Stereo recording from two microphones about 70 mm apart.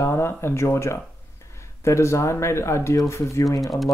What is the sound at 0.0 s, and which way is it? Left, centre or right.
Speech, left.